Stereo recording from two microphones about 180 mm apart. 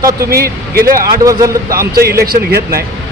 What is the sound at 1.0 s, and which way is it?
Speech, 20° right (ahead or behind).